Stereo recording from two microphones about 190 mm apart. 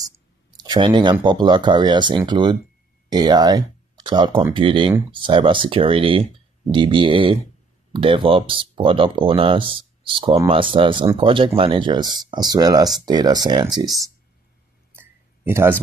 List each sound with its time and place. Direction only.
0.0 s clicking: 20° right (ahead or behind)
1.2 s speech: 25° right (ahead or behind)
14.9 s a sound: 10° right (ahead or behind)